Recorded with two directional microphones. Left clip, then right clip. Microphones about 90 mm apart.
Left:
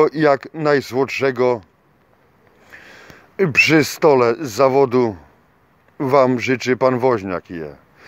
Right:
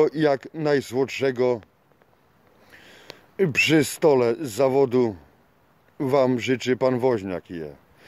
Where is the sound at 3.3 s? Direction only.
20° right (ahead or behind).